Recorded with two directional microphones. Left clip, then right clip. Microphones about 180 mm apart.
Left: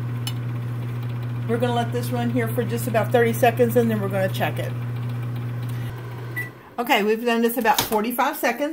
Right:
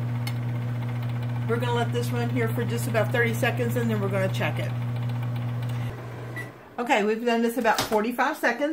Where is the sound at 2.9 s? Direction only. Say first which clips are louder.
Left 5 dB; 25° left (ahead or behind).